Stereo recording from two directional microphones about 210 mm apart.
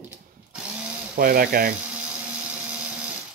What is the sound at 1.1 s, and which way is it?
Speech, 45° right (ahead or behind).